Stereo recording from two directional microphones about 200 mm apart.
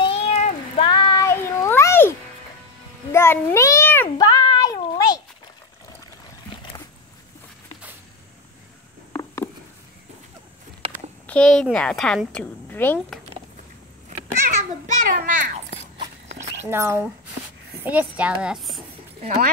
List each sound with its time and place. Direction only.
0.0 s meow: 30° left (ahead or behind); by 2.1 s 10° left (ahead or behind)
3.1 s a sound: 10° left (ahead or behind)
9.1 s a sound: 10° left (ahead or behind)
11.2 s a woman's voice: 5° left (ahead or behind)
14.5 s babbling: 35° right (ahead or behind)
16.7 s a woman's voice: 10° right (ahead or behind)